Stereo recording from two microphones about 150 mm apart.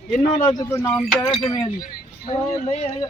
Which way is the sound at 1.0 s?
5° left (ahead or behind).